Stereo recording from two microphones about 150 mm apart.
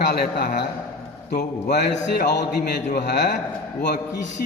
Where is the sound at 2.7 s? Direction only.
90° left.